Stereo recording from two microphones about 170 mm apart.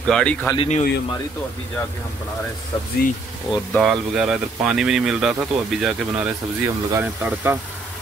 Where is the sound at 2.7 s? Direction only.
30° left (ahead or behind).